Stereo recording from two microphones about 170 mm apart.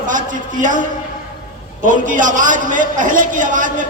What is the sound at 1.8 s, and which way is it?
A man's voice, 50° right (ahead or behind).